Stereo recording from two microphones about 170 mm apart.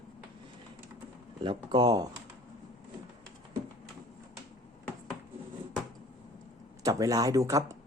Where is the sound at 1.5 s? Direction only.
25° right (ahead or behind).